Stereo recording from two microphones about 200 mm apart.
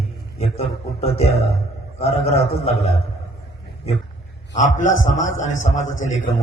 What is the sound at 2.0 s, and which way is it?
A man's voice, 30° left (ahead or behind).